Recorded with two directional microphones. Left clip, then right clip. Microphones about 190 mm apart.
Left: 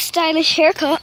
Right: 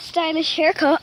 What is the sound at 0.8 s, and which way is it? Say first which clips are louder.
Speech: right 1 dB; 15° right (ahead or behind).